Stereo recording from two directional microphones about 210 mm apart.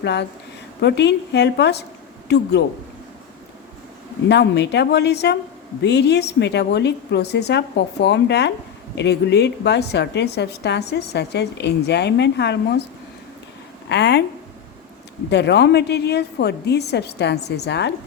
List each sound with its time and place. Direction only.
0.0 s a woman's voice: 55° left (ahead or behind)
4.3 s a woman's voice: 55° left (ahead or behind)
13.8 s a woman's voice: 55° left (ahead or behind)
15.3 s a woman's voice: 55° left (ahead or behind)